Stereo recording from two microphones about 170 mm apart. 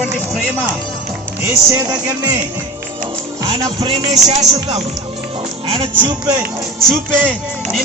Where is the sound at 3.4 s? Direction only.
25° right (ahead or behind).